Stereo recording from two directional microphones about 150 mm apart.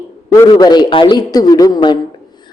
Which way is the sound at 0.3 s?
30° left (ahead or behind).